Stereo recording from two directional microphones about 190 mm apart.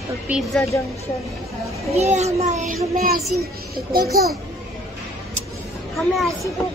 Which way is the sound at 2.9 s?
50° right (ahead or behind).